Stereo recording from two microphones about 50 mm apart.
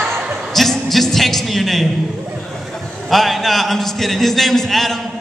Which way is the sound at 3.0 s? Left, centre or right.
Centre.